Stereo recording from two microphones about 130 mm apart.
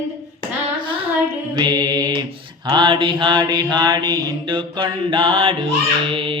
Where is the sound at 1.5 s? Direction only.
30° right (ahead or behind).